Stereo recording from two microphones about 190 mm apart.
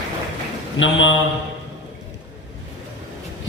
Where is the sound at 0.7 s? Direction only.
75° left (ahead or behind).